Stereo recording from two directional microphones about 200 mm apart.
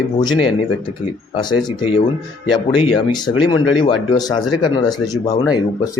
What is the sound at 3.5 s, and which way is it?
A man's voice, 20° left (ahead or behind).